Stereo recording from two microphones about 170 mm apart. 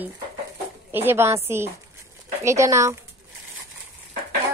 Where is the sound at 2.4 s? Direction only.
15° right (ahead or behind).